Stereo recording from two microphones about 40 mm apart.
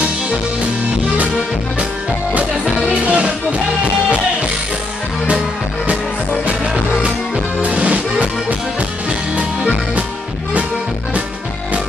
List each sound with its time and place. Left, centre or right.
2.9 s music: right
7.6 s music: right